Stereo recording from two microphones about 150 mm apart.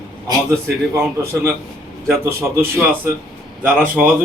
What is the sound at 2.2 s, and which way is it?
Speech, 15° right (ahead or behind).